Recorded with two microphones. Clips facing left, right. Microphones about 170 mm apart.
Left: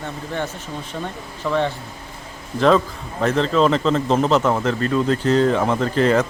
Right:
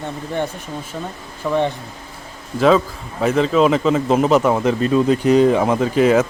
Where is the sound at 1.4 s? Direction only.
15° right (ahead or behind).